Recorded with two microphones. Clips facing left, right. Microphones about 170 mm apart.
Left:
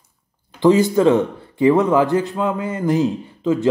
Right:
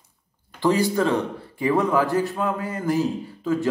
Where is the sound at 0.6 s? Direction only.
20° left (ahead or behind).